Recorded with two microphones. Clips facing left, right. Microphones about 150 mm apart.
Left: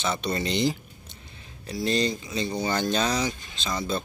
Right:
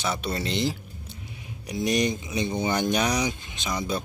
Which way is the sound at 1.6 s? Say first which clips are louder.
Right 1 dB; 15° right (ahead or behind).